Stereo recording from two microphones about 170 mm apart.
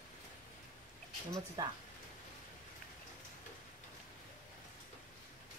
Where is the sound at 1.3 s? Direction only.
20° right (ahead or behind).